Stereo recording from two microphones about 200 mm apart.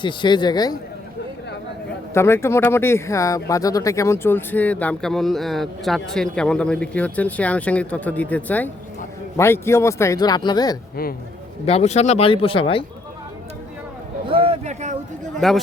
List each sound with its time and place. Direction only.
0.0 s speech: 25° left (ahead or behind)
2.1 s speech: 10° left (ahead or behind)
11.6 s speech: 30° left (ahead or behind)
14.4 s a sound: 30° right (ahead or behind)
15.4 s a man's voice: centre (ahead or behind)